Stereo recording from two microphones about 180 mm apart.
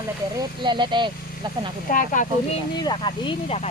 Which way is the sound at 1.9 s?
45° left (ahead or behind).